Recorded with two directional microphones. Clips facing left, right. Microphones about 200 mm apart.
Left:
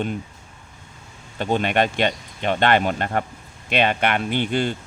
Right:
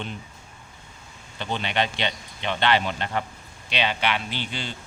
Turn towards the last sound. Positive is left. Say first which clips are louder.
# left 11 dB
turn(degrees=55)  # may be behind; listen again after turning